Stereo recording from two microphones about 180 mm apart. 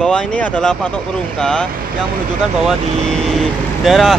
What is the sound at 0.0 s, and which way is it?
Speech, 5° left (ahead or behind).